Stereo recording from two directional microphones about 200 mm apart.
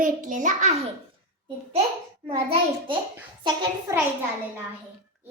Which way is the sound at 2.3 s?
30° right (ahead or behind).